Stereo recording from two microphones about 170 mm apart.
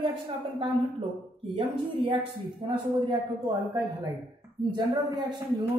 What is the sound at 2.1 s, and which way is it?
Speech, 30° right (ahead or behind).